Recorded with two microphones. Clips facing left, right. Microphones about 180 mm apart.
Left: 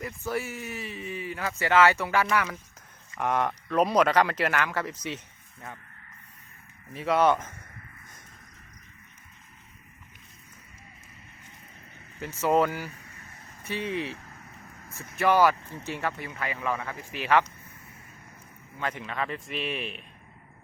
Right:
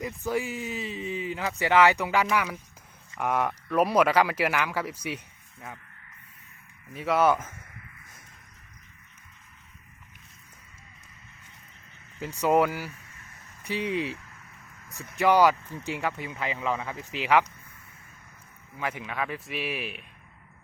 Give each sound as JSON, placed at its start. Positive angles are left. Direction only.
{"t": 0.0, "sound": "speech", "side_deg": -15}
{"t": 6.9, "sound": "speech", "side_deg": 0}
{"t": 12.2, "sound": "speech", "side_deg": -15}
{"t": 14.2, "sound": "vehicle", "side_deg": 40}
{"t": 15.2, "sound": "speech", "side_deg": -15}
{"t": 18.8, "sound": "speech", "side_deg": -10}